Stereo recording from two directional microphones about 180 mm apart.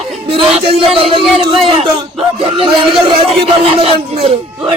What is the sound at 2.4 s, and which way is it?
Speech, 30° right (ahead or behind).